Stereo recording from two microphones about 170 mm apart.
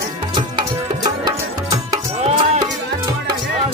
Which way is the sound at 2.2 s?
40° right (ahead or behind).